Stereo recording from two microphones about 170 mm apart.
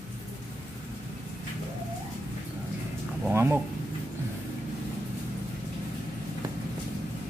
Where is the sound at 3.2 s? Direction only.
15° right (ahead or behind).